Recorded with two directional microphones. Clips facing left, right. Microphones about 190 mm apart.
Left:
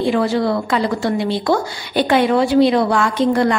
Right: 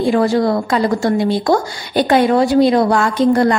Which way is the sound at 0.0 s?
45° right (ahead or behind).